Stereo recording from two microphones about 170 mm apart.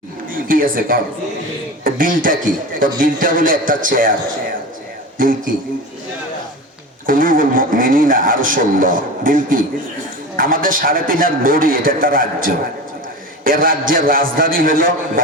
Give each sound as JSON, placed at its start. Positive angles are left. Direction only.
{"t": 0.3, "sound": "a woman's voice", "side_deg": -55}
{"t": 5.1, "sound": "speech", "side_deg": -55}
{"t": 7.1, "sound": "speech", "side_deg": -55}